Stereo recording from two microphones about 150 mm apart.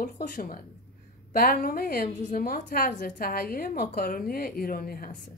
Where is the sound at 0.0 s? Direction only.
65° left (ahead or behind).